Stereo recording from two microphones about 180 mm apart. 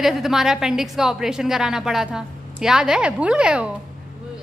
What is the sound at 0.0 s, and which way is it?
A woman's voice, centre (ahead or behind).